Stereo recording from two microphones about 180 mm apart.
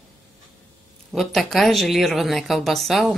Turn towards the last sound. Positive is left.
turn(degrees=0)  # may be behind; listen again after turning